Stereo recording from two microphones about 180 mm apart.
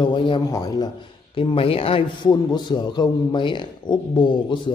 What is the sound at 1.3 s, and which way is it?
A man's voice, 30° left (ahead or behind).